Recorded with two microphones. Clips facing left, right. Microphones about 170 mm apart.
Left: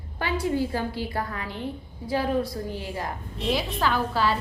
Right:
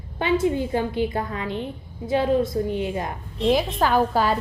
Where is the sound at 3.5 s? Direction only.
45° right (ahead or behind).